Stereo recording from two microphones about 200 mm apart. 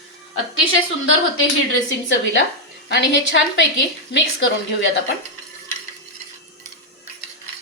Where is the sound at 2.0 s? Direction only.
65° left (ahead or behind).